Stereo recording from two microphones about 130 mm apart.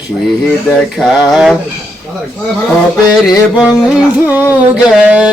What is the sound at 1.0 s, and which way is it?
Speech, centre (ahead or behind).